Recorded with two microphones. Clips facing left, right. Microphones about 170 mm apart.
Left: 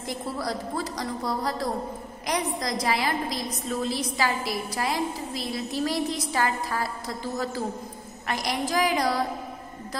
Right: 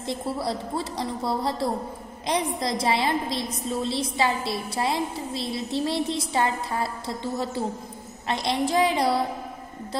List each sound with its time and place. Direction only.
0.0 s a woman's voice: 25° right (ahead or behind)